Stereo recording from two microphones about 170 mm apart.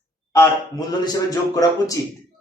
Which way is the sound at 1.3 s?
20° left (ahead or behind).